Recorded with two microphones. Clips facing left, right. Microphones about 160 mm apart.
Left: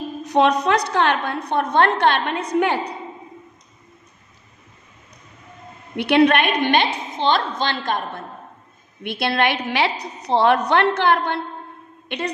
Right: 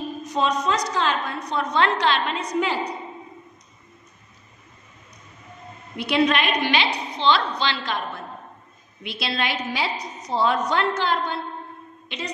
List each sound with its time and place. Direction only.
0.2 s a woman's voice: 65° left (ahead or behind)
5.9 s a woman's voice: 60° left (ahead or behind)